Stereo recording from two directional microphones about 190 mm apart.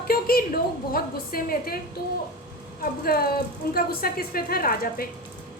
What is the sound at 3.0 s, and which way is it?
A woman's voice, 55° left (ahead or behind).